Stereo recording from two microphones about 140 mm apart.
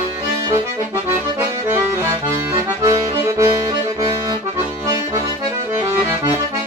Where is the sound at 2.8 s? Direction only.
20° right (ahead or behind).